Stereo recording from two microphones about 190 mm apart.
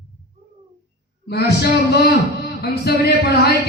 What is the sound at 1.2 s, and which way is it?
A man's voice, 60° left (ahead or behind).